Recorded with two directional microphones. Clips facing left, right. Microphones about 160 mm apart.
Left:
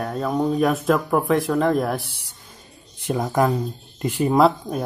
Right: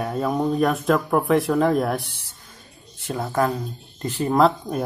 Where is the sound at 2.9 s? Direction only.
15° left (ahead or behind).